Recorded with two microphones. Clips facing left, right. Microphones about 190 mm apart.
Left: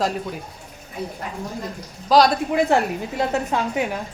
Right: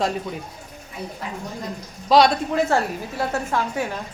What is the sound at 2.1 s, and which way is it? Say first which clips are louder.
Speech: even; centre (ahead or behind).